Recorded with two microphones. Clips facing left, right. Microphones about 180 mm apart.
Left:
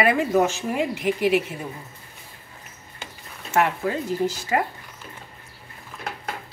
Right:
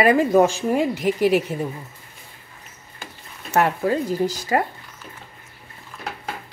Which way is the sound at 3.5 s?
40° right (ahead or behind).